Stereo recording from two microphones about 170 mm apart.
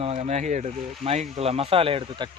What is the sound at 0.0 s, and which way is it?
Speech, 40° right (ahead or behind).